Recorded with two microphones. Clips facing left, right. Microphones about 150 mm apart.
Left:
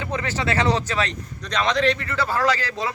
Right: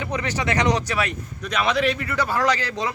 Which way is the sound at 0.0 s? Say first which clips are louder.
Even; 15° right (ahead or behind).